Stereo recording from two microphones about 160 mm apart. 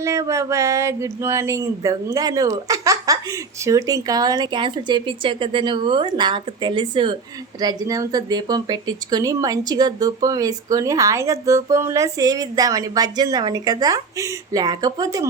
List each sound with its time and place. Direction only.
0.0 s speech: 20° right (ahead or behind)